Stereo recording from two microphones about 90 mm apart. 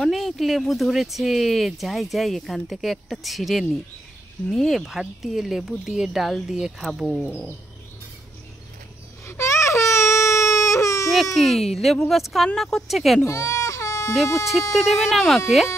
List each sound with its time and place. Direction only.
0.0 s speech: centre (ahead or behind)
7.2 s bird: 25° left (ahead or behind)
9.2 s baby cry: 35° left (ahead or behind)
11.3 s speech: centre (ahead or behind)
13.2 s baby cry: 35° left (ahead or behind)
14.2 s speech: 35° left (ahead or behind)
14.7 s speech: centre (ahead or behind)